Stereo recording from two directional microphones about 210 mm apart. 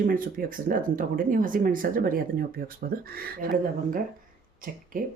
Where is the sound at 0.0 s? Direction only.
40° right (ahead or behind).